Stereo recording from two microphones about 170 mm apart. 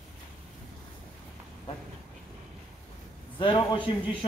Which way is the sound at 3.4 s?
30° left (ahead or behind).